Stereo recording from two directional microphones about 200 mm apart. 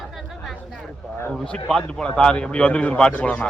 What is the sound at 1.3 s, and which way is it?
Speech, 5° left (ahead or behind).